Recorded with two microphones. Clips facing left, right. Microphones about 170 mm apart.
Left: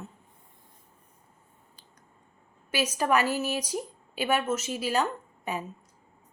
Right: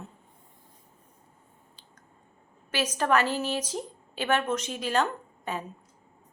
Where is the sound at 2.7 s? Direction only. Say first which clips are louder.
Even; 10° left (ahead or behind).